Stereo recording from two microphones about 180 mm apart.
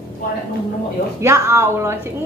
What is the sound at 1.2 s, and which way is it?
Speech, 15° right (ahead or behind).